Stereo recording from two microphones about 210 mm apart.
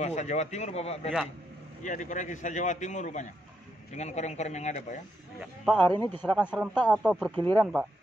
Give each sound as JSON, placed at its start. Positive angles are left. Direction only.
{"t": 0.0, "sound": "a man's voice", "side_deg": 35}
{"t": 5.9, "sound": "a man's voice", "side_deg": 10}
{"t": 6.3, "sound": "speech", "side_deg": -5}
{"t": 6.8, "sound": "a man's voice", "side_deg": 5}